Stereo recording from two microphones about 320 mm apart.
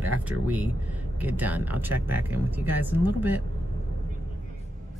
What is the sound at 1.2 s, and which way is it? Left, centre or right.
Speech, centre.